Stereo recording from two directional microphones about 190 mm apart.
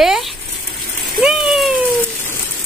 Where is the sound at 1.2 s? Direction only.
Centre (ahead or behind).